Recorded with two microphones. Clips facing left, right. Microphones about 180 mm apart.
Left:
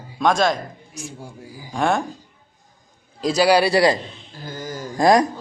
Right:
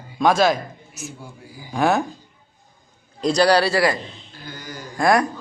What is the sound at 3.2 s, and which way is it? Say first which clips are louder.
Speech: even; 5° left (ahead or behind).